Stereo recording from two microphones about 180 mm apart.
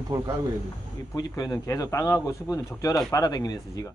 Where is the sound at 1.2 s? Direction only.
20° left (ahead or behind).